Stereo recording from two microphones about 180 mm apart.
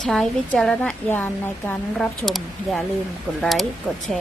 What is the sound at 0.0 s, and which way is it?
A woman's voice, 5° left (ahead or behind).